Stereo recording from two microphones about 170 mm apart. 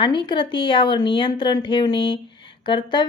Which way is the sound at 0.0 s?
30° left (ahead or behind).